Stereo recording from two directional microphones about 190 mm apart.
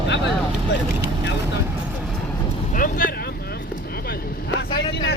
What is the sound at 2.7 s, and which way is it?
Vehicle, 45° left (ahead or behind).